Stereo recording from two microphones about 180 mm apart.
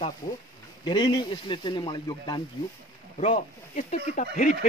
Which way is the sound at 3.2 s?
35° left (ahead or behind).